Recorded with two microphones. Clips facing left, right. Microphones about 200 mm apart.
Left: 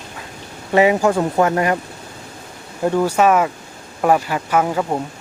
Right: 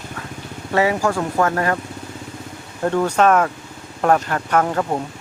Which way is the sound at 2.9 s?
10° left (ahead or behind).